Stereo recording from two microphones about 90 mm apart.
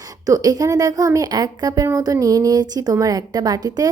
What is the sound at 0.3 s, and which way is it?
A woman's voice, 45° right (ahead or behind).